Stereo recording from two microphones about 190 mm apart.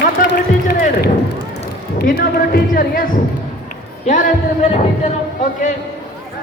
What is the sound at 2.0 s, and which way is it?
Speech, 50° left (ahead or behind).